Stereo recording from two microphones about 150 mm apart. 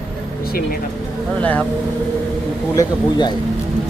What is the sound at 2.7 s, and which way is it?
Speech, 30° left (ahead or behind).